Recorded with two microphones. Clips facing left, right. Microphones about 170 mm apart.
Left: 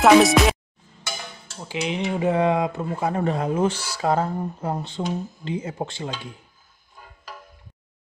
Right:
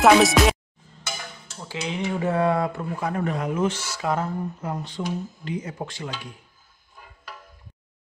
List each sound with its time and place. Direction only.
0.0 s music: centre (ahead or behind)
1.6 s speech: 20° left (ahead or behind)